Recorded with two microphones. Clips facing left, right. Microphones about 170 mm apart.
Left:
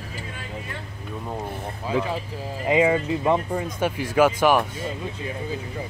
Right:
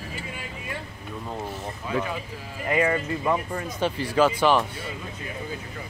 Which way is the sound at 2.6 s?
15° left (ahead or behind).